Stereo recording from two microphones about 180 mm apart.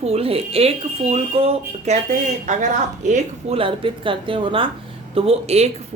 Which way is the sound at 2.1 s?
45° right (ahead or behind).